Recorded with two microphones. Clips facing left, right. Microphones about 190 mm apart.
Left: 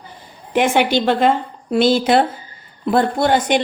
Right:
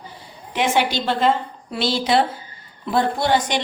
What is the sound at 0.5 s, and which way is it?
A woman's voice, 55° left (ahead or behind).